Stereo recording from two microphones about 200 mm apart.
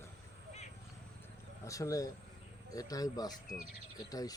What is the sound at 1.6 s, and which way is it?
Speech, 15° left (ahead or behind).